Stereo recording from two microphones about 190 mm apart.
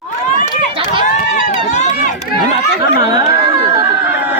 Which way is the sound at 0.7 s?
30° right (ahead or behind).